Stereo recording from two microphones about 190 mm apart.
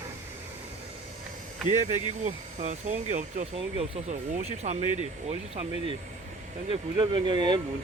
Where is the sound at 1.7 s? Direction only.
40° right (ahead or behind).